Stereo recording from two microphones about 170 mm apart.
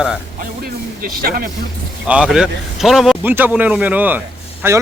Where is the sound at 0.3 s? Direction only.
60° right (ahead or behind).